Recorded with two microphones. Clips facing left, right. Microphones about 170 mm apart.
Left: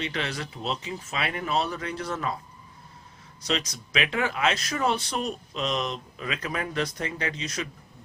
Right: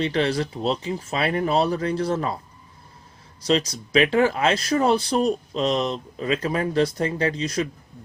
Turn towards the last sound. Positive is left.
turn(degrees=-35)  # may be behind; listen again after turning